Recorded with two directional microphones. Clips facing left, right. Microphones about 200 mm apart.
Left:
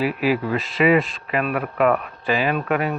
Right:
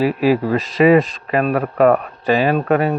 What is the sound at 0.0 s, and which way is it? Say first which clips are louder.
Speech: right 5 dB; 40° right (ahead or behind).